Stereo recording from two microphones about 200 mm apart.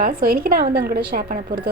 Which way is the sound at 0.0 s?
50° right (ahead or behind).